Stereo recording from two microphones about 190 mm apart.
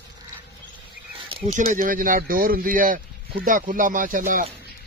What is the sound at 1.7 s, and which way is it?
A man's voice, 45° right (ahead or behind).